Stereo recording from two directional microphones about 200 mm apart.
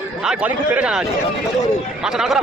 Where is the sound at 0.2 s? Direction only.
5° right (ahead or behind).